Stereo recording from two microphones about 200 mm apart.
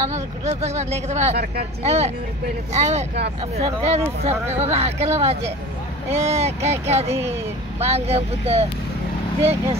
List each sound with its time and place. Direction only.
0.1 s speech: 35° right (ahead or behind)
1.3 s speech: 50° right (ahead or behind)
1.8 s speech: 35° right (ahead or behind)